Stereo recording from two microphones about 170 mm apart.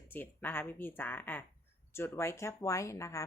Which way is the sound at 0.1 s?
10° left (ahead or behind).